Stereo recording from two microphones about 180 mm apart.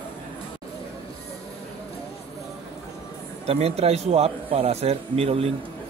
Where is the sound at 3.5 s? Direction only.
35° right (ahead or behind).